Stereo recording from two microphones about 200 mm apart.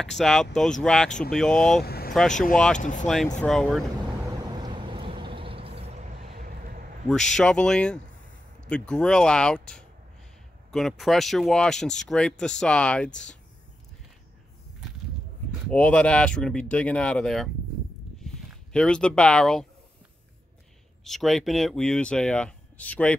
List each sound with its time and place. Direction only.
0.0 s speech: centre (ahead or behind)
1.9 s vehicle: 50° left (ahead or behind)
2.5 s speech: 5° left (ahead or behind)
2.8 s speech: 40° left (ahead or behind)
3.3 s speech: 5° left (ahead or behind)
4.5 s vehicle: 20° right (ahead or behind)
6.4 s a sound: 45° right (ahead or behind)
7.1 s speech: 5° left (ahead or behind)
15.7 s speech: 5° left (ahead or behind)
18.2 s a sound: 5° left (ahead or behind)
21.0 s speech: centre (ahead or behind)